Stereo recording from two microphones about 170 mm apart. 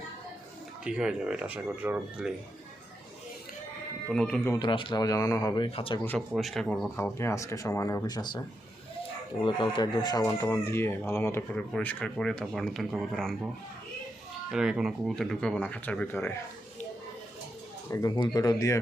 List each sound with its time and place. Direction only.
0.9 s speech: 5° right (ahead or behind)
4.1 s speech: 5° left (ahead or behind)
4.6 s speech: 30° left (ahead or behind)
5.6 s speech: 35° left (ahead or behind)
6.1 s speech: centre (ahead or behind)
6.9 s speech: 15° left (ahead or behind)
14.5 s speech: 5° right (ahead or behind)
17.9 s speech: 20° left (ahead or behind)